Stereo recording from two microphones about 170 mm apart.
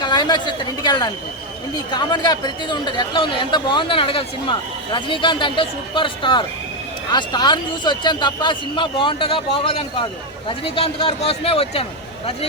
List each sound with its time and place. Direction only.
0.0 s a woman's voice: 25° left (ahead or behind)